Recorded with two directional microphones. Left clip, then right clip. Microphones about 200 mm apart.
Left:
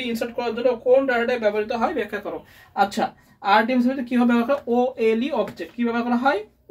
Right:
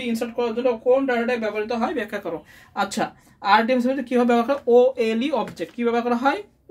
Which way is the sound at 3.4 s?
55° right (ahead or behind).